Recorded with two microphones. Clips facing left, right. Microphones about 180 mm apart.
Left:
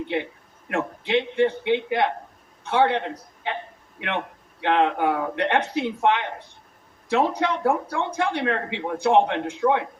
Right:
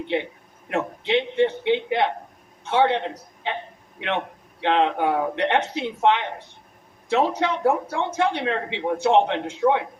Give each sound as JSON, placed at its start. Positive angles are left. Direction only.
{"t": 0.7, "sound": "speech", "side_deg": -25}
{"t": 4.6, "sound": "speech", "side_deg": -20}